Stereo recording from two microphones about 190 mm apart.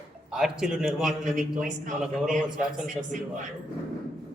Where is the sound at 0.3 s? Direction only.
5° right (ahead or behind).